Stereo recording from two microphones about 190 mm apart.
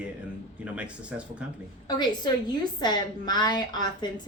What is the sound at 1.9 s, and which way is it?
A woman's voice, 20° left (ahead or behind).